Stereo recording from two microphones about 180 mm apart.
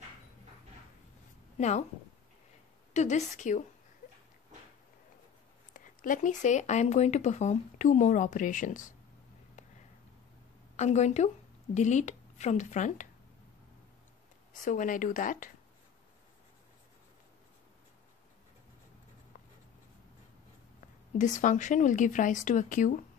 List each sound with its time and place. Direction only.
1.6 s a woman's voice: 40° left (ahead or behind)
2.9 s a woman's voice: 40° left (ahead or behind)
5.7 s speech: 45° left (ahead or behind)
10.8 s a woman's voice: 40° left (ahead or behind)
14.5 s speech: 45° left (ahead or behind)
21.2 s speech: 45° left (ahead or behind)